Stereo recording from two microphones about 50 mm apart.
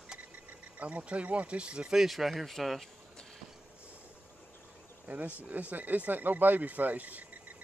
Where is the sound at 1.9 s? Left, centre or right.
Centre.